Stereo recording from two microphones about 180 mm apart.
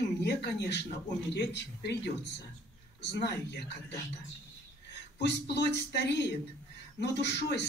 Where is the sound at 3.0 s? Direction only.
75° left (ahead or behind).